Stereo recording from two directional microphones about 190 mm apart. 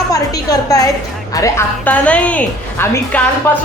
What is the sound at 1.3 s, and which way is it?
A woman's voice, 15° left (ahead or behind).